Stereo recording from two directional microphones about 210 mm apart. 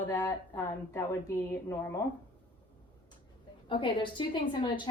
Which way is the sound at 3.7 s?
25° left (ahead or behind).